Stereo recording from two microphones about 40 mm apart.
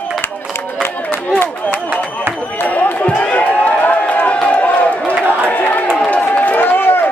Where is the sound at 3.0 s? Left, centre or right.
Left.